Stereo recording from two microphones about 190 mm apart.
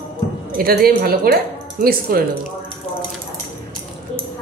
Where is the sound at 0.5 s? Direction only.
50° right (ahead or behind).